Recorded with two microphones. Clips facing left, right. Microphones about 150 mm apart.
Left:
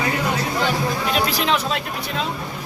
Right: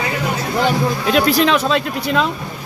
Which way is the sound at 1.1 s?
75° right (ahead or behind).